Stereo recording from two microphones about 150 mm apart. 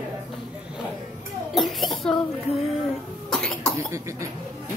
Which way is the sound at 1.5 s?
Centre (ahead or behind).